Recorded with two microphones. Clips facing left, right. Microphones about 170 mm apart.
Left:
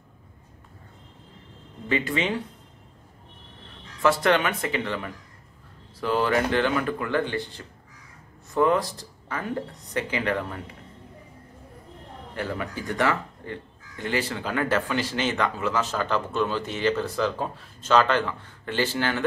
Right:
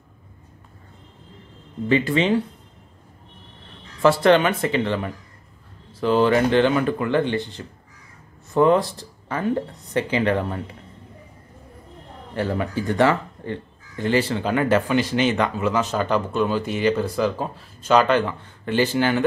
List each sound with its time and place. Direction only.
1.9 s speech: 30° right (ahead or behind)
4.0 s speech: 30° right (ahead or behind)
12.4 s speech: 30° right (ahead or behind)